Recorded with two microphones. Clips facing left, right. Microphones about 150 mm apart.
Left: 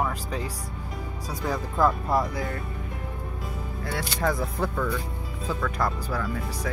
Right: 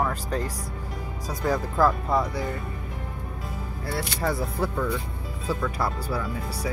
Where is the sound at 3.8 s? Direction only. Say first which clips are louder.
Even; 5° right (ahead or behind).